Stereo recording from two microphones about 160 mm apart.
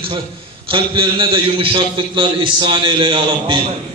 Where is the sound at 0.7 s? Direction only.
30° right (ahead or behind).